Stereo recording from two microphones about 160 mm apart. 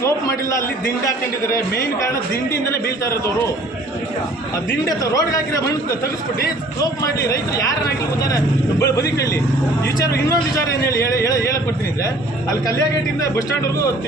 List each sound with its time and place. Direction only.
4.9 s a man's voice: 20° left (ahead or behind)
7.0 s a man's voice: 20° left (ahead or behind)
10.2 s a man's voice: 20° left (ahead or behind)